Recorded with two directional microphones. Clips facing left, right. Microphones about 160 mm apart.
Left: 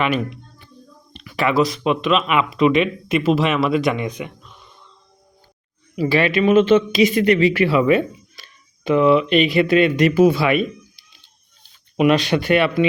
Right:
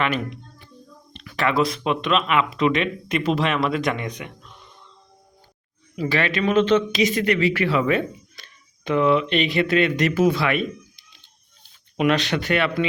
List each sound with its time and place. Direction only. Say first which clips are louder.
1.1 s speech: left 3 dB; 10° left (ahead or behind)
6.0 s speech: left 5 dB; 10° left (ahead or behind)
7.0 s speech: left 5 dB; 25° left (ahead or behind)